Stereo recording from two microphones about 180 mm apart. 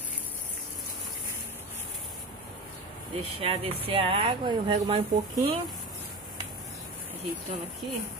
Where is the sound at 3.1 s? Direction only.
30° right (ahead or behind).